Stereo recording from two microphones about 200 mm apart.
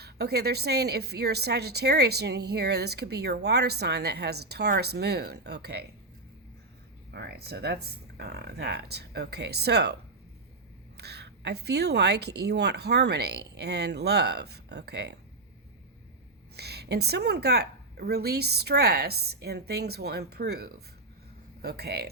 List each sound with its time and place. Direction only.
0.0 s a woman's voice: 55° right (ahead or behind)
7.1 s a woman's voice: 55° right (ahead or behind)
16.6 s a woman's voice: 55° right (ahead or behind)